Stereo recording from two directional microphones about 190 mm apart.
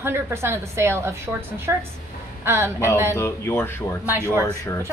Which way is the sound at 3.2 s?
15° left (ahead or behind).